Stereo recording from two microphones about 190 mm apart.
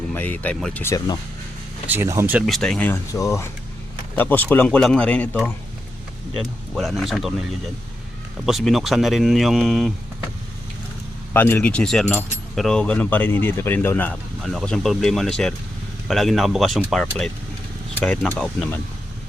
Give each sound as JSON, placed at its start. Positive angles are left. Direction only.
{"t": 0.1, "sound": "speech", "side_deg": 10}
{"t": 1.9, "sound": "speech", "side_deg": -15}
{"t": 2.5, "sound": "speech", "side_deg": 5}
{"t": 6.4, "sound": "speech", "side_deg": 0}
{"t": 8.4, "sound": "speech", "side_deg": 0}
{"t": 11.3, "sound": "speech", "side_deg": 10}